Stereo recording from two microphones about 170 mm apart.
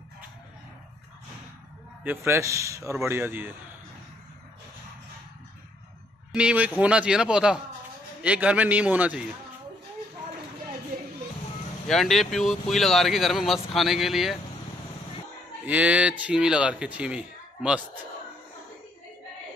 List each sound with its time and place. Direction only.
2.0 s speech: 15° right (ahead or behind)
6.3 s speech: 5° right (ahead or behind)
11.9 s speech: centre (ahead or behind)
15.6 s speech: 10° right (ahead or behind)